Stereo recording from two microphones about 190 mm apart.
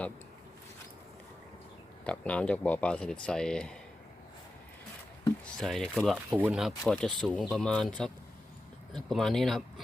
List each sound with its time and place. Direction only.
2.0 s speech: 5° left (ahead or behind)
5.5 s speech: centre (ahead or behind)